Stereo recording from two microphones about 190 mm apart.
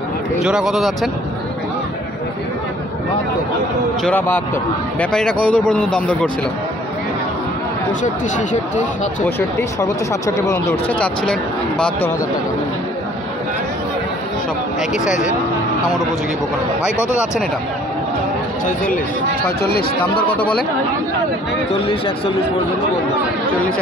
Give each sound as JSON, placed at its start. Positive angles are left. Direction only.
{"t": 0.4, "sound": "a man's voice", "side_deg": -5}
{"t": 4.0, "sound": "speech", "side_deg": 10}
{"t": 5.5, "sound": "a man's voice", "side_deg": 5}
{"t": 8.0, "sound": "speech", "side_deg": 40}
{"t": 9.6, "sound": "speech", "side_deg": 15}
{"t": 15.0, "sound": "speech", "side_deg": 40}
{"t": 19.6, "sound": "speech", "side_deg": 55}
{"t": 21.7, "sound": "speech", "side_deg": 30}